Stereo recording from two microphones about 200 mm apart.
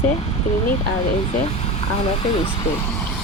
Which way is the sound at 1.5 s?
30° left (ahead or behind).